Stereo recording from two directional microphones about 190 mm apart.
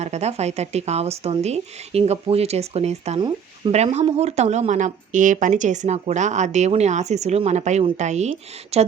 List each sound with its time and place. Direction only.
0.0 s a woman's voice: 35° right (ahead or behind)